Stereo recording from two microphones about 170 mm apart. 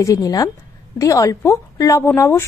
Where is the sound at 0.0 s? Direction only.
20° left (ahead or behind).